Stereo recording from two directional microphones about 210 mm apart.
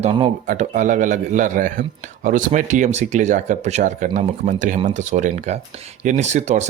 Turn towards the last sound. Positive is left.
turn(degrees=-35)  # may be behind; listen again after turning